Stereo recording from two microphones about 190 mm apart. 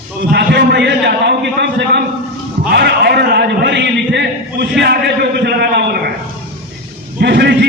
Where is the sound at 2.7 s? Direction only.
60° right (ahead or behind).